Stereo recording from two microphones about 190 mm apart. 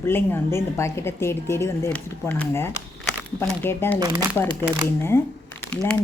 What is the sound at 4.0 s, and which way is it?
Speech, 20° right (ahead or behind).